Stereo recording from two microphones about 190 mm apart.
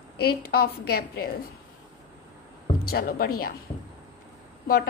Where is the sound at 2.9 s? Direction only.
55° left (ahead or behind).